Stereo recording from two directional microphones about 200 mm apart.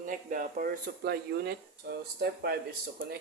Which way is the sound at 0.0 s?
40° right (ahead or behind).